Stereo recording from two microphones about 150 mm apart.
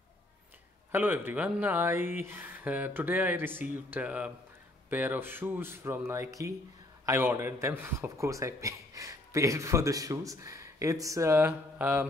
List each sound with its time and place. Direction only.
0.9 s speech: 10° right (ahead or behind)